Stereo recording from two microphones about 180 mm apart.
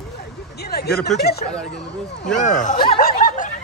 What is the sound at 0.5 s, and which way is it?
Speech, 60° left (ahead or behind).